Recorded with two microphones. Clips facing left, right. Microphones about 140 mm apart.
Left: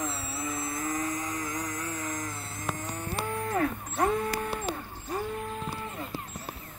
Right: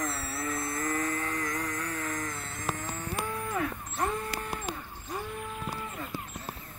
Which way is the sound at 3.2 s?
35° left (ahead or behind).